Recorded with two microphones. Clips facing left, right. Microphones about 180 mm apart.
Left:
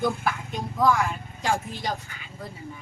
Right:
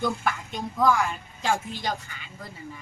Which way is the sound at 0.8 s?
Centre (ahead or behind).